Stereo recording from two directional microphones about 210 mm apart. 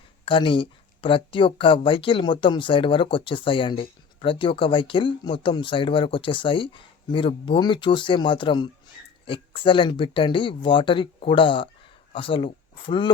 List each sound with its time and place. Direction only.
0.3 s speech: 25° left (ahead or behind)